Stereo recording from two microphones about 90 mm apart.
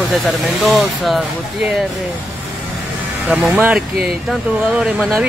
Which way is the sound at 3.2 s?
5° right (ahead or behind).